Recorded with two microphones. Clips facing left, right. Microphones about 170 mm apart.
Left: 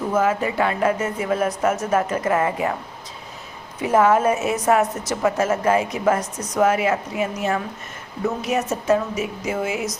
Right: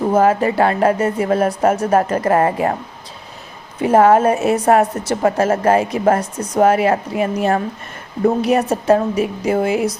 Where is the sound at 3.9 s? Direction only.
55° right (ahead or behind).